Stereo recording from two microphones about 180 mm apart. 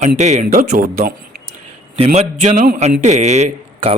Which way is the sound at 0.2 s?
40° right (ahead or behind).